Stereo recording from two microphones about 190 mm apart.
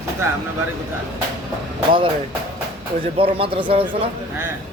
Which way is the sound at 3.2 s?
30° right (ahead or behind).